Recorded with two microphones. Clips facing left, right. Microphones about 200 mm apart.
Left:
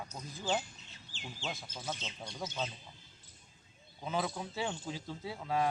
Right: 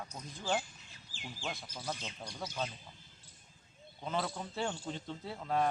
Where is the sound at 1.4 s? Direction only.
5° left (ahead or behind).